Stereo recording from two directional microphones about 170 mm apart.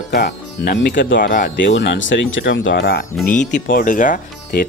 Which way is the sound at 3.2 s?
50° left (ahead or behind).